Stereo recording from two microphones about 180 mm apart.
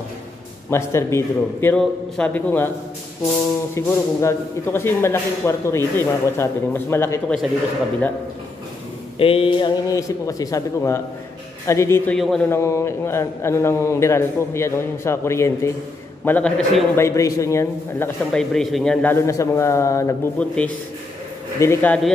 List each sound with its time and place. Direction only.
0.7 s a man's voice: 15° left (ahead or behind)
3.7 s a man's voice: 15° left (ahead or behind)
9.2 s a sound: 30° left (ahead or behind)
9.8 s a man's voice: 20° left (ahead or behind)
12.2 s speech: centre (ahead or behind)
12.4 s a man's voice: 15° left (ahead or behind)
17.0 s a man's voice: 15° left (ahead or behind)